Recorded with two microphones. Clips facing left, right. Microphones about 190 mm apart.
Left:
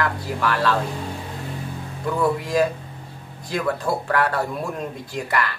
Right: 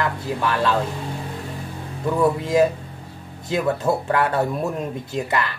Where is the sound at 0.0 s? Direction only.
20° right (ahead or behind).